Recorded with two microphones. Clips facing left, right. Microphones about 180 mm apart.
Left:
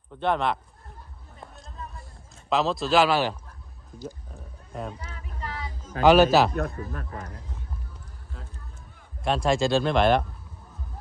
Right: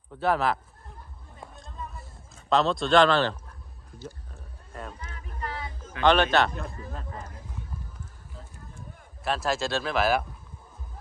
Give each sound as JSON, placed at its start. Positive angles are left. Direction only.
{"t": 0.2, "sound": "speech", "side_deg": -5}
{"t": 1.4, "sound": "a sound", "side_deg": 0}
{"t": 4.7, "sound": "speech", "side_deg": 5}
{"t": 5.4, "sound": "a sound", "side_deg": -55}
{"t": 6.0, "sound": "speech", "side_deg": 5}
{"t": 6.5, "sound": "a man's voice", "side_deg": 60}
{"t": 9.2, "sound": "speech", "side_deg": 0}